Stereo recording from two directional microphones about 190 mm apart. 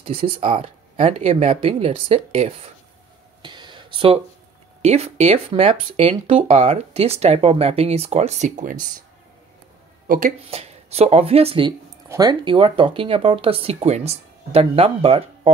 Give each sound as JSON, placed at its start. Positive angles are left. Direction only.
{"t": 0.0, "sound": "speech", "side_deg": -30}
{"t": 3.4, "sound": "a sound", "side_deg": -25}
{"t": 4.8, "sound": "speech", "side_deg": -35}
{"t": 10.0, "sound": "speech", "side_deg": -45}
{"t": 10.4, "sound": "speech", "side_deg": -30}